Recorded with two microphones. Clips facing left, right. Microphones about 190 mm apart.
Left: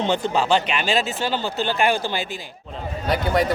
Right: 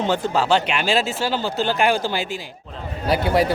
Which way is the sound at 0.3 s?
10° left (ahead or behind).